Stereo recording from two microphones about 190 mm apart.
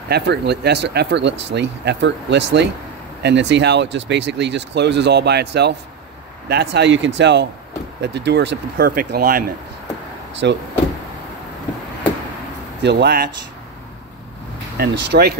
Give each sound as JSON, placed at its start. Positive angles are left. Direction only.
{"t": 0.1, "sound": "speech", "side_deg": -60}
{"t": 10.3, "sound": "speech", "side_deg": -65}
{"t": 12.8, "sound": "speech", "side_deg": -60}
{"t": 14.8, "sound": "speech", "side_deg": -60}